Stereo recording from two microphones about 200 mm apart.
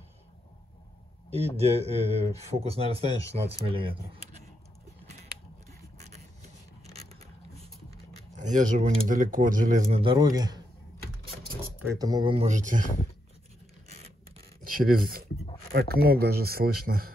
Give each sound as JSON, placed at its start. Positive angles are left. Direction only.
{"t": 1.3, "sound": "speech", "side_deg": -30}
{"t": 8.4, "sound": "speech", "side_deg": -40}
{"t": 11.6, "sound": "speech", "side_deg": -15}
{"t": 14.6, "sound": "speech", "side_deg": -45}